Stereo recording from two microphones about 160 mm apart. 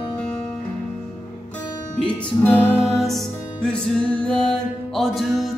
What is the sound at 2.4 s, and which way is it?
Music, 10° left (ahead or behind).